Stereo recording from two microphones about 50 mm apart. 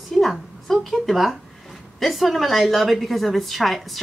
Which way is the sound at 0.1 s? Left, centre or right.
Centre.